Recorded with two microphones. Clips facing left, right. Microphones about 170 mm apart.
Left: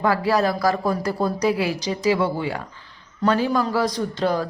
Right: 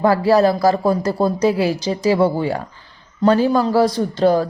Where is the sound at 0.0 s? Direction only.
30° right (ahead or behind).